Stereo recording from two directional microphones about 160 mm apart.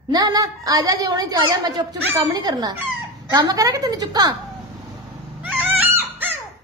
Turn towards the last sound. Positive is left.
turn(degrees=-10)  # may be behind; listen again after turning